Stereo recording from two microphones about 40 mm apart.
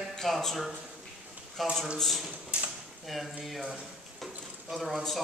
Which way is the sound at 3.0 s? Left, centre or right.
Centre.